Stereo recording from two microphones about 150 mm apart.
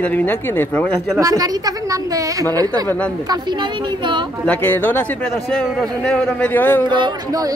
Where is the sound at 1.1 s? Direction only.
20° right (ahead or behind).